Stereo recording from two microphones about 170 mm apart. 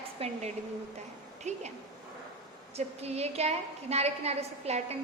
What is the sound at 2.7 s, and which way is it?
A woman's voice, 40° right (ahead or behind).